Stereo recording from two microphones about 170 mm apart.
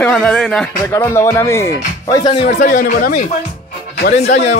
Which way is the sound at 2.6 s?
55° left (ahead or behind).